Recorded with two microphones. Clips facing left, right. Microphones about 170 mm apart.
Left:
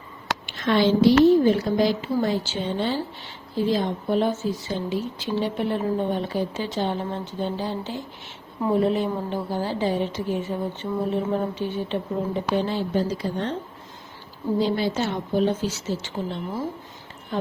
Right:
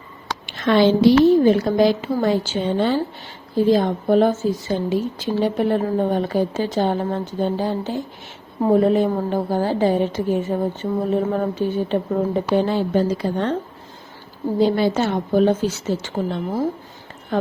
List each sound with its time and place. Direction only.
0.6 s a woman's voice: 75° right (ahead or behind)
1.5 s a woman's voice: 65° right (ahead or behind)
2.1 s a woman's voice: 55° right (ahead or behind)
14.6 s a woman's voice: 55° right (ahead or behind)